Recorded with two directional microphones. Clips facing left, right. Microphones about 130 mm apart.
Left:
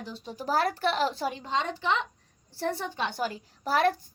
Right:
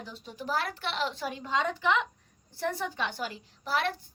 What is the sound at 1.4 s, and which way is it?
A woman's voice, 30° left (ahead or behind).